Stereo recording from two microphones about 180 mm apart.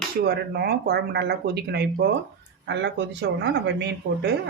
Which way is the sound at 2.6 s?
80° right.